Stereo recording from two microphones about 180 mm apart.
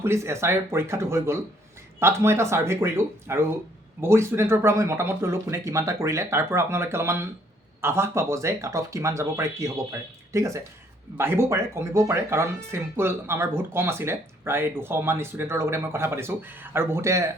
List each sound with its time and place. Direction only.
0.0 s speech: 15° right (ahead or behind)